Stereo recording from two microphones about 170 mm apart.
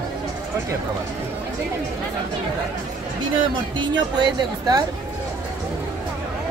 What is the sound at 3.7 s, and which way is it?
Speech, 25° right (ahead or behind).